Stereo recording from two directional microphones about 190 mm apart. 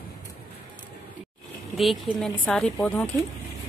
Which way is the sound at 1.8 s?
Centre (ahead or behind).